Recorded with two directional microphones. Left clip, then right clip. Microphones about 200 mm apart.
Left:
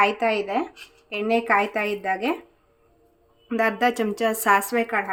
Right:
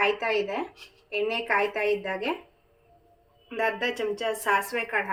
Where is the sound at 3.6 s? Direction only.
60° left (ahead or behind).